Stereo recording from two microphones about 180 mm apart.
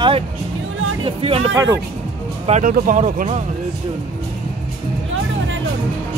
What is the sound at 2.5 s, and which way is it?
Speech, 45° right (ahead or behind).